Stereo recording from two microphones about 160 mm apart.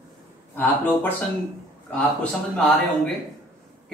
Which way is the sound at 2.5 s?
5° left (ahead or behind).